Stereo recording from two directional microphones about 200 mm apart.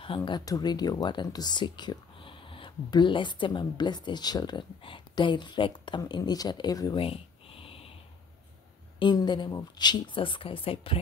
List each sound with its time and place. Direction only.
0.0 s speech: 25° left (ahead or behind)
9.0 s speech: 20° left (ahead or behind)